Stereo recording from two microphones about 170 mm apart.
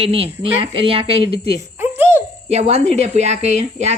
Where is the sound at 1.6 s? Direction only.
15° right (ahead or behind).